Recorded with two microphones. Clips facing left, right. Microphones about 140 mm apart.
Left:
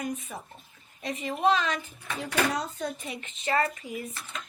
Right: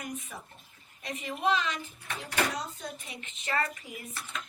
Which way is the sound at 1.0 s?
30° left (ahead or behind).